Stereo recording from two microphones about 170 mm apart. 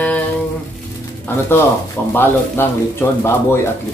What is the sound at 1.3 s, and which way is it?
Speech, 10° left (ahead or behind).